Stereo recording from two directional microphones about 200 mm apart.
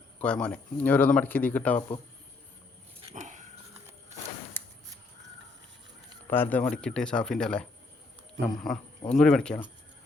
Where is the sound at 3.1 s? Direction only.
35° right (ahead or behind).